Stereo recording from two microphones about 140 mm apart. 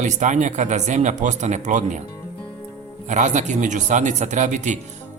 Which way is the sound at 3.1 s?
60° right (ahead or behind).